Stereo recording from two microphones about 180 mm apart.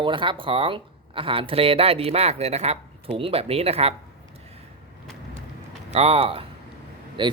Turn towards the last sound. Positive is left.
turn(degrees=-25)  # may be behind; listen again after turning